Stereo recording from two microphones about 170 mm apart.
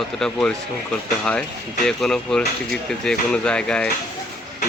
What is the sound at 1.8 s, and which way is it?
Speech, 5° left (ahead or behind).